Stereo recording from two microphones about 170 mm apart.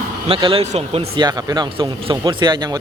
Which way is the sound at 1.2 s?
20° right (ahead or behind).